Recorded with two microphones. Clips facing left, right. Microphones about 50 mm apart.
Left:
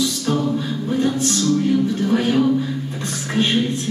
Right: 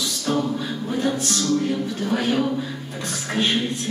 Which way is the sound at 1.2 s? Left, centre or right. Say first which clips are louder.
Left 5 dB; right.